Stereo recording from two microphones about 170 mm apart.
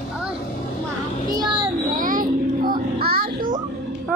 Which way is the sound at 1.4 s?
30° right (ahead or behind).